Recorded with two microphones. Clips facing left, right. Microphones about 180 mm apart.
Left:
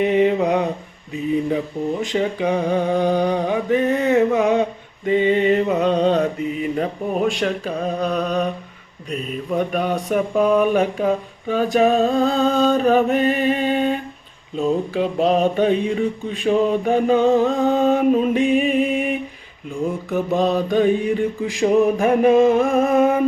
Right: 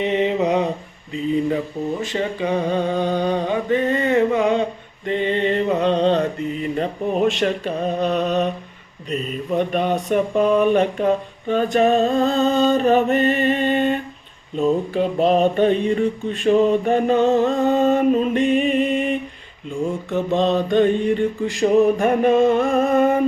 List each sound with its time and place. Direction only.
0.0 s mantra: centre (ahead or behind)
1.1 s a sound: 10° left (ahead or behind)
9.0 s mantra: centre (ahead or behind)